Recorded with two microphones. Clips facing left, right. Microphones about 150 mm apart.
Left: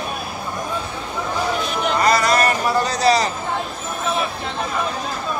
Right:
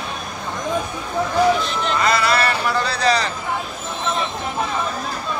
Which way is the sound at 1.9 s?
40° left (ahead or behind).